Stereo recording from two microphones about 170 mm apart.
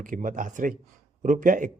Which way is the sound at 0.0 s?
50° right (ahead or behind).